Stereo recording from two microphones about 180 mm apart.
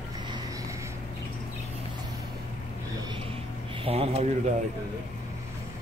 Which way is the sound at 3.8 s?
30° right (ahead or behind).